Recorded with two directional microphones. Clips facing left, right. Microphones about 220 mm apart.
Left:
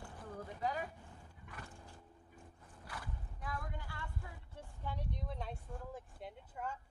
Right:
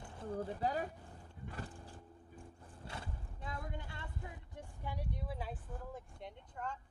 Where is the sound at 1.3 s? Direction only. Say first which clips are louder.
Right 8 dB; 30° right (ahead or behind); by 6.8 s 5° left (ahead or behind).